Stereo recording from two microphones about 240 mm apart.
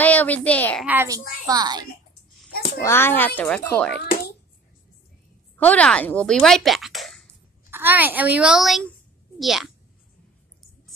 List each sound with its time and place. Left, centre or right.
0.0 s a child's voice: centre
0.8 s a child's voice: centre
2.8 s a child's voice: centre
5.6 s a woman's voice: centre
6.4 s a sound: centre
7.7 s a child's voice: centre